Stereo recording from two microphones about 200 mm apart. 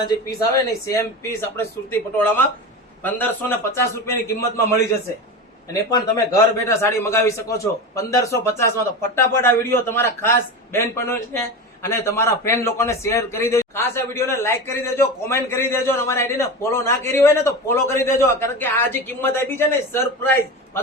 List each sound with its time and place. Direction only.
0.0 s a man's voice: 20° left (ahead or behind)